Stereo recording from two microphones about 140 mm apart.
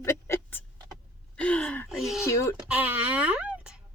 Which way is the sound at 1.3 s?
10° left (ahead or behind).